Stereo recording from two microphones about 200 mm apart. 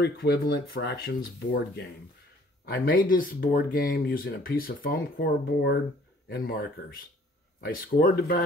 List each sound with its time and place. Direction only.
0.0 s speech: 55° left (ahead or behind)
2.6 s speech: 50° left (ahead or behind)